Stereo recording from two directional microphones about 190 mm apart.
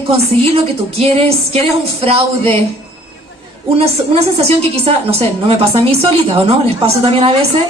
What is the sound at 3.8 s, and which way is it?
A woman's voice, 35° right (ahead or behind).